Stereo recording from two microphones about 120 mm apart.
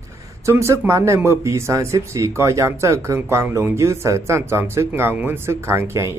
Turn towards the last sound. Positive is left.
turn(degrees=-20)  # may be behind; listen again after turning